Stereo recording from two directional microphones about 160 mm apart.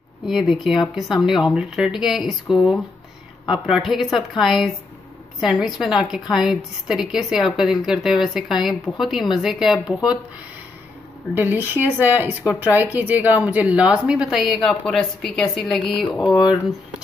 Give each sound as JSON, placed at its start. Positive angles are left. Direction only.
{"t": 0.3, "sound": "speech", "side_deg": 0}
{"t": 11.3, "sound": "speech", "side_deg": -10}
{"t": 16.3, "sound": "speech", "side_deg": 25}